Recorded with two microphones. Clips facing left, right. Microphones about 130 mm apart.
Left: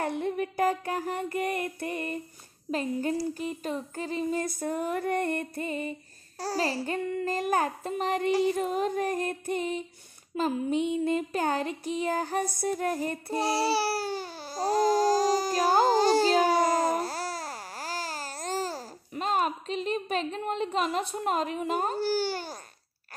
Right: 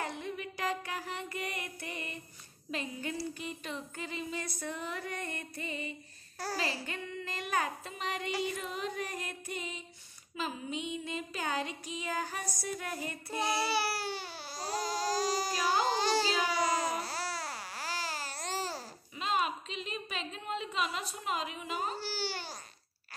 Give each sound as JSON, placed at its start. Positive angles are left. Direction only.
{"t": 0.0, "sound": "music", "side_deg": 55}
{"t": 2.7, "sound": "child singing", "side_deg": 40}
{"t": 10.3, "sound": "music", "side_deg": 50}